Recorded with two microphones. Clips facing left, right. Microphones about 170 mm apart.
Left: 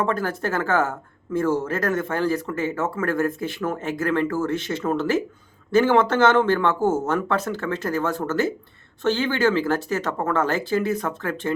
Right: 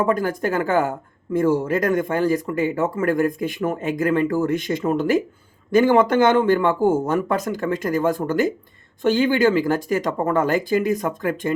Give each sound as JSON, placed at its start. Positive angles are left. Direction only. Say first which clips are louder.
{"t": 0.0, "sound": "speech", "louder": "right 3 dB", "side_deg": -15}